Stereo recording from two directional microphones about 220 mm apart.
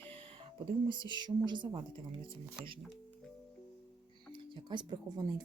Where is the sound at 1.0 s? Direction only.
20° left (ahead or behind).